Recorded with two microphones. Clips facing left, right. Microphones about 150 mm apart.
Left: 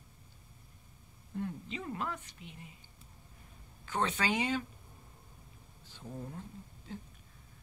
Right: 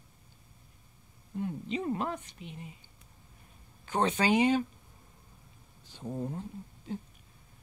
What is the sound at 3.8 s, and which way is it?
Speech, 20° right (ahead or behind).